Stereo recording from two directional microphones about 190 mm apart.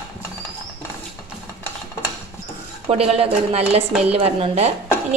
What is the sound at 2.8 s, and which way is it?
Speech, 30° right (ahead or behind).